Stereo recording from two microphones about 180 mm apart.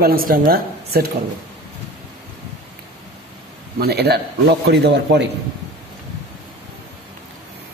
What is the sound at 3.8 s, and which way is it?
A man's voice, 65° right (ahead or behind).